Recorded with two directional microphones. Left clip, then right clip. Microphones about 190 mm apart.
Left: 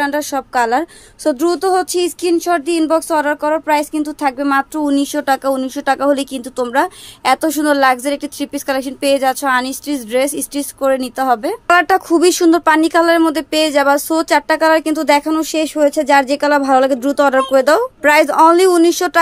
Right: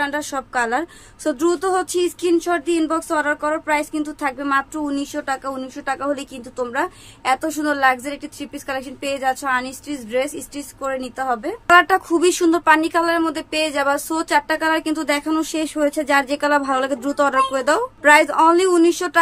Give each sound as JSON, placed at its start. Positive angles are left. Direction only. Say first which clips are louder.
{"t": 0.0, "sound": "a woman's voice", "louder": "left 5 dB", "side_deg": 35}
{"t": 11.6, "sound": "speech", "louder": "even", "side_deg": 35}